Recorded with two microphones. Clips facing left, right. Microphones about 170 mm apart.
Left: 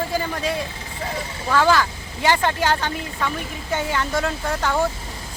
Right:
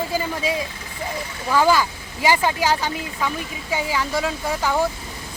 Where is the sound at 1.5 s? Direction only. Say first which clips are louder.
Even; 10° right (ahead or behind).